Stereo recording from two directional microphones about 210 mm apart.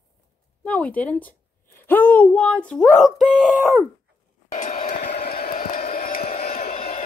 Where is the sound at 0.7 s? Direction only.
5° left (ahead or behind).